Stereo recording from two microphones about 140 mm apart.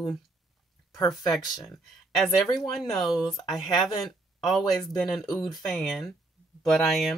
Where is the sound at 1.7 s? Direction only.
Centre (ahead or behind).